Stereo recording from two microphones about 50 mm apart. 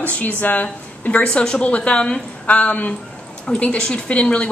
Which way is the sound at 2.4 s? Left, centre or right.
Left.